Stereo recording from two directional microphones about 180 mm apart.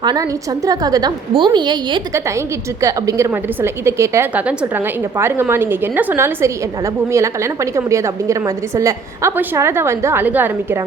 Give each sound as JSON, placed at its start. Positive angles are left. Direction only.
{"t": 0.0, "sound": "a woman's voice", "side_deg": -20}